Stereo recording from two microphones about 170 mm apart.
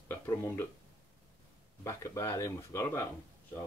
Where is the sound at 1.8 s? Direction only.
15° left (ahead or behind).